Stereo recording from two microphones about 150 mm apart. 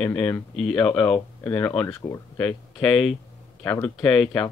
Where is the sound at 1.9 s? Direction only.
25° left (ahead or behind).